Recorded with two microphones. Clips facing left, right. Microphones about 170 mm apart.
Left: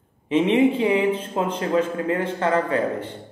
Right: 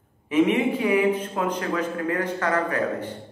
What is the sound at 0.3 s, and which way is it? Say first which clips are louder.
Speech: left 3 dB; 25° left (ahead or behind).